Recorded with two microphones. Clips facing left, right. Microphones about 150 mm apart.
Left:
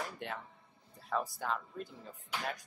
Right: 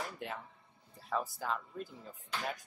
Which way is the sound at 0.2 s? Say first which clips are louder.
Even; 5° right (ahead or behind).